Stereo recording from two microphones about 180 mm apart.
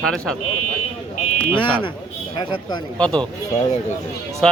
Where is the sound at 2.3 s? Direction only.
25° left (ahead or behind).